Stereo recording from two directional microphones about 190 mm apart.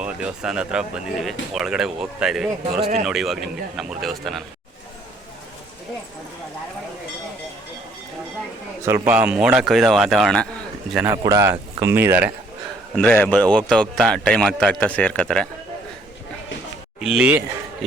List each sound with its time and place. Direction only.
0.0 s speech: 5° right (ahead or behind)
8.8 s speech: 10° right (ahead or behind)
11.0 s speech: 15° right (ahead or behind)
13.0 s speech: 5° left (ahead or behind)
17.0 s speech: 5° right (ahead or behind)